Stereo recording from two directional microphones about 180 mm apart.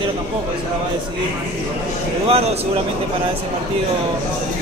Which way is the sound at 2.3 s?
35° right (ahead or behind).